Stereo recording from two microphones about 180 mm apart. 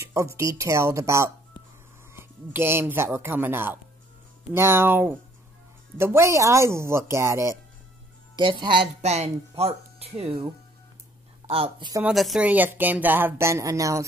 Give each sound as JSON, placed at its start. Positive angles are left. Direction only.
{"t": 0.0, "sound": "a woman's voice", "side_deg": -15}
{"t": 8.4, "sound": "speech", "side_deg": -25}
{"t": 12.1, "sound": "a woman's voice", "side_deg": 0}